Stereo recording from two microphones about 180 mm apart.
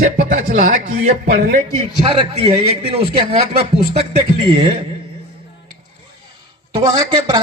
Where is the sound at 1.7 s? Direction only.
30° right (ahead or behind).